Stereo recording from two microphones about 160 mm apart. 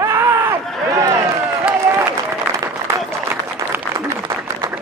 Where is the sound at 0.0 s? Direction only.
15° right (ahead or behind).